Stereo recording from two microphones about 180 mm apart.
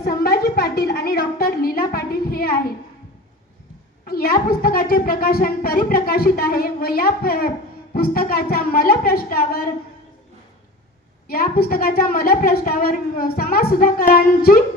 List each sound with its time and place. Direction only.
0.0 s a sound: 55° left (ahead or behind)
4.0 s a woman's voice: 55° left (ahead or behind)
11.3 s a woman's voice: 55° left (ahead or behind)